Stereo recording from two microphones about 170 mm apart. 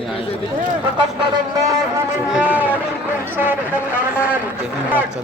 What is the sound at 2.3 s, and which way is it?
Speech, 10° right (ahead or behind).